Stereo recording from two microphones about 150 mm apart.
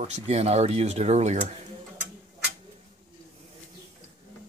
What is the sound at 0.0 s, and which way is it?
Speech, 45° right (ahead or behind).